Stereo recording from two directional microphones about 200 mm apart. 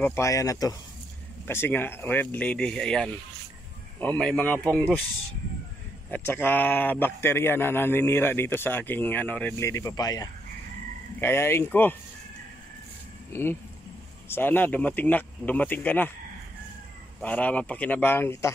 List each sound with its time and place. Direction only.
0.0 s speech: 15° left (ahead or behind)
4.2 s speech: 5° left (ahead or behind)
6.0 s speech: 10° left (ahead or behind)
13.3 s speech: 10° left (ahead or behind)
17.2 s speech: 5° left (ahead or behind)